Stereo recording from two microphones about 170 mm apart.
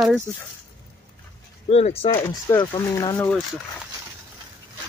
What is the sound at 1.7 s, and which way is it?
Speech, 35° left (ahead or behind).